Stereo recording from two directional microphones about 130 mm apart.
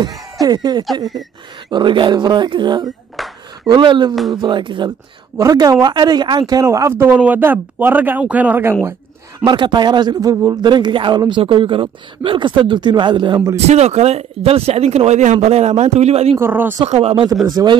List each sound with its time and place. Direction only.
0.4 s a man's voice: 30° right (ahead or behind)
3.2 s a sound: centre (ahead or behind)
3.6 s a man's voice: 35° right (ahead or behind); by 8.7 s 15° right (ahead or behind)
9.4 s a man's voice: 35° right (ahead or behind)
13.6 s speech: 55° right (ahead or behind)
16.3 s speech: 15° right (ahead or behind)
16.9 s speech: 50° right (ahead or behind)
17.5 s a man's voice: 30° right (ahead or behind)